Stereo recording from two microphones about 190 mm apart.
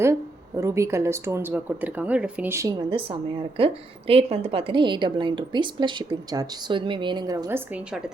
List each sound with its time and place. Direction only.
0.0 s speech: 15° right (ahead or behind)